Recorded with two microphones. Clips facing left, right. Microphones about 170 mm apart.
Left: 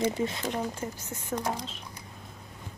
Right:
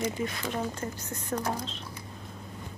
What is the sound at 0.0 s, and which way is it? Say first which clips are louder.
Speech: left 3 dB; 25° left (ahead or behind).